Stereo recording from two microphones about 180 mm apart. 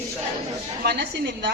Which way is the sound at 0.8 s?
65° right (ahead or behind).